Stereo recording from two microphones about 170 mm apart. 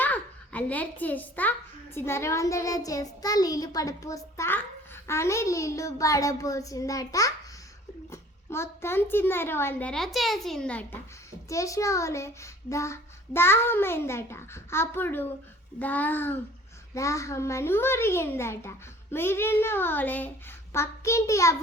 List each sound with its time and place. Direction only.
0.0 s a child's voice: 10° left (ahead or behind)
11.4 s a child's voice: 20° left (ahead or behind)